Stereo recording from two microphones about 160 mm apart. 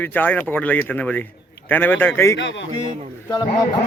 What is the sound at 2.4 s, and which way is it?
Speech, 90° left.